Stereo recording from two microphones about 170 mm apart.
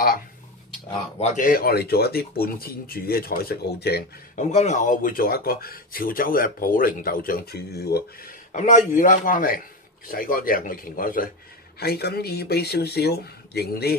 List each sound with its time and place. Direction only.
1.2 s speech: 50° left (ahead or behind); by 4.0 s 65° left (ahead or behind)
4.4 s speech: 45° left (ahead or behind); by 8.0 s 70° left (ahead or behind)
8.5 s a man's voice: 45° left (ahead or behind); by 13.9 s 70° left (ahead or behind)